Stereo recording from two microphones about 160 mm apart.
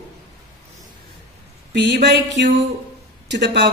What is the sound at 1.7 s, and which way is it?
Speech, 90° right.